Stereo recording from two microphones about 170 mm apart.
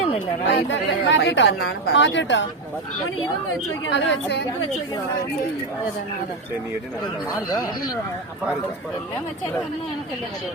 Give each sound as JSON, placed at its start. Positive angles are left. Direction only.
{"t": 0.4, "sound": "speech", "side_deg": 90}
{"t": 3.8, "sound": "speech", "side_deg": 90}
{"t": 7.5, "sound": "speech", "side_deg": 20}